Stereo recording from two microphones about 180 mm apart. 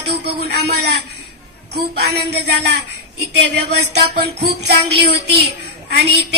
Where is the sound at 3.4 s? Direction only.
70° right (ahead or behind).